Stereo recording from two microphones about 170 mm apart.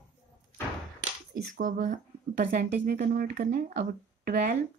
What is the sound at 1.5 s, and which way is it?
Speech, 50° right (ahead or behind).